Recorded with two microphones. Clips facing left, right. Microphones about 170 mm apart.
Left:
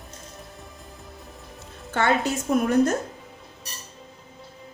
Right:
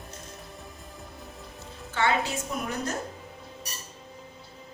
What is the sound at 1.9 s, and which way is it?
A woman's voice, 50° left (ahead or behind).